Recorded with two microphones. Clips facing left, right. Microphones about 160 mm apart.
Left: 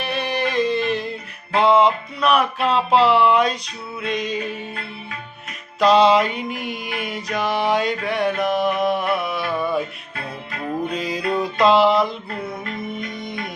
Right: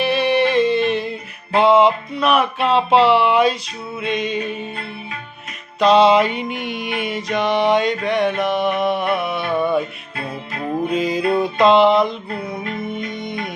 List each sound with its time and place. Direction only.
0.0 s music: centre (ahead or behind)
1.5 s mantra: centre (ahead or behind)
5.8 s mantra: centre (ahead or behind)
9.4 s mantra: 25° right (ahead or behind)
10.8 s mantra: centre (ahead or behind)
12.6 s music: centre (ahead or behind)